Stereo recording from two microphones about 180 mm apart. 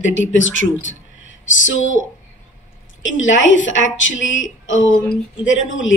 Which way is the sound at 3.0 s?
90° left.